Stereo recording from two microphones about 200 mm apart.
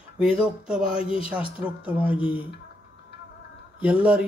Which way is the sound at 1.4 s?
25° left (ahead or behind).